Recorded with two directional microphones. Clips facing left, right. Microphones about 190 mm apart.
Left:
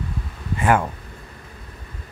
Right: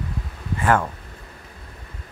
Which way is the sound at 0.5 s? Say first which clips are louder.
Left 1 dB; 15° left (ahead or behind).